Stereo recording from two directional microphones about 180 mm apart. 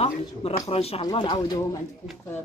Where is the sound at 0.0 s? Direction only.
35° left (ahead or behind).